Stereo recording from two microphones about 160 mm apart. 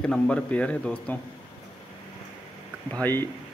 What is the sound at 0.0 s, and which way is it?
A man's voice, 5° left (ahead or behind).